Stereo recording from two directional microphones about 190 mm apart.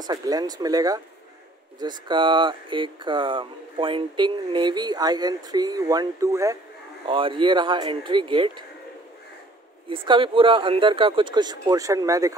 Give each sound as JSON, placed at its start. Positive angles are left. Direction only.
{"t": 0.0, "sound": "speech", "side_deg": -20}
{"t": 7.1, "sound": "speech", "side_deg": -25}
{"t": 9.8, "sound": "speech", "side_deg": -25}